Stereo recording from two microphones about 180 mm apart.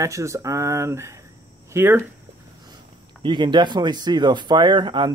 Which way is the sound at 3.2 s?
25° right (ahead or behind).